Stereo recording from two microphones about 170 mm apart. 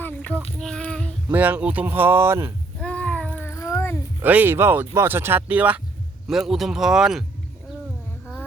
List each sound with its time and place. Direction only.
0.0 s child singing: 10° left (ahead or behind)
1.3 s speech: 10° right (ahead or behind)
2.8 s a sound: 5° left (ahead or behind)
4.2 s speech: 10° right (ahead or behind)